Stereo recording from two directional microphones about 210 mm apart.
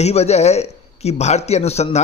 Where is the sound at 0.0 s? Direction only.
30° left (ahead or behind).